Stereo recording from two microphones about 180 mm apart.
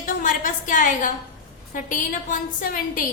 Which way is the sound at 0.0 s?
45° left (ahead or behind).